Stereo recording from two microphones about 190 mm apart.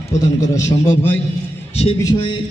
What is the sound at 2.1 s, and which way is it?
Speech, 25° left (ahead or behind).